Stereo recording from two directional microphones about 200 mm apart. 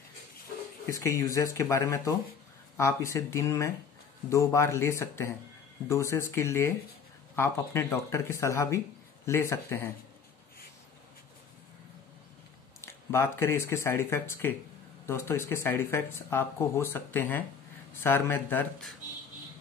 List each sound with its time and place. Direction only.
0.8 s speech: 15° left (ahead or behind)
12.8 s speech: 10° left (ahead or behind)